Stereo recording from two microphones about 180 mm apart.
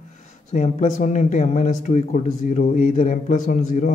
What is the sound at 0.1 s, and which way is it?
Speech, 45° left (ahead or behind).